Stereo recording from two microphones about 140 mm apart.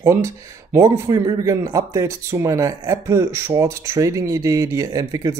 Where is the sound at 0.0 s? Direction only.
20° right (ahead or behind).